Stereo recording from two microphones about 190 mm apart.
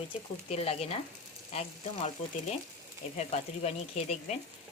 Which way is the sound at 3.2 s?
35° left (ahead or behind).